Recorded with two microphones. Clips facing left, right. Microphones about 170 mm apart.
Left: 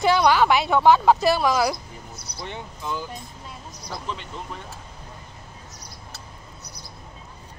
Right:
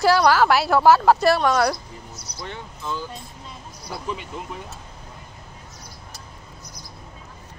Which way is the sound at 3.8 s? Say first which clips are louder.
Right 3 dB; 10° right (ahead or behind).